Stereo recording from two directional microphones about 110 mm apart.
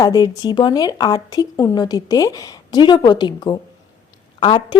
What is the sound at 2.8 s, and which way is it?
A woman's voice, 45° left (ahead or behind).